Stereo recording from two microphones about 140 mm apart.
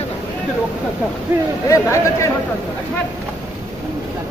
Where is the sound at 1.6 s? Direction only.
20° left (ahead or behind).